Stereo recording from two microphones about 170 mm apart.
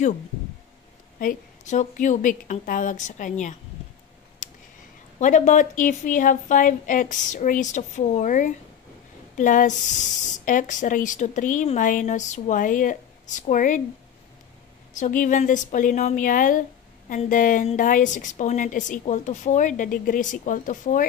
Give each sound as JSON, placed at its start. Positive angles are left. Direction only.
{"t": 1.2, "sound": "a woman's voice", "side_deg": 45}
{"t": 4.4, "sound": "a sound", "side_deg": 45}
{"t": 5.2, "sound": "a woman's voice", "side_deg": 45}
{"t": 15.0, "sound": "a woman's voice", "side_deg": 50}